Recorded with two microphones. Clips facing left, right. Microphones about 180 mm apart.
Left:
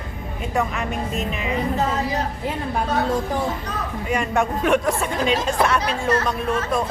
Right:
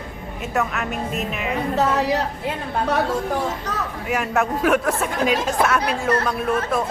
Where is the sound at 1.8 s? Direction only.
75° right (ahead or behind).